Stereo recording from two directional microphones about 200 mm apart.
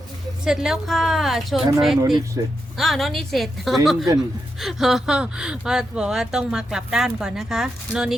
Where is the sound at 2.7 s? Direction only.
Centre (ahead or behind).